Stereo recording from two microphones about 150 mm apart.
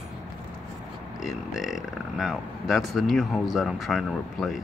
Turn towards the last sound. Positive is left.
turn(degrees=0)  # may be behind; listen again after turning